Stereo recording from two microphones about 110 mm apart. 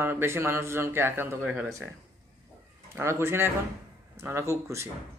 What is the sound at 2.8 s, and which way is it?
A man's voice, 25° right (ahead or behind).